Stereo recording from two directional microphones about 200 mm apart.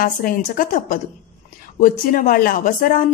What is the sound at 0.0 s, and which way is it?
A woman's voice, 45° left (ahead or behind).